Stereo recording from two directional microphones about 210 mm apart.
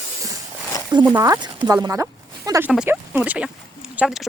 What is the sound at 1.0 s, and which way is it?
Speech, 15° right (ahead or behind).